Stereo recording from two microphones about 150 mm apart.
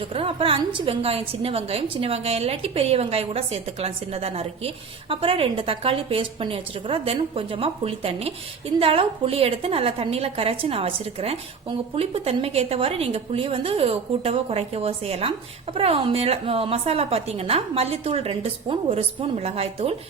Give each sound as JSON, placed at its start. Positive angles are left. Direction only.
{"t": 0.1, "sound": "a woman's voice", "side_deg": -40}